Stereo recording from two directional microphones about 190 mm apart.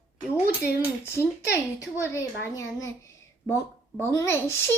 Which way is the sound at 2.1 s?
15° left (ahead or behind).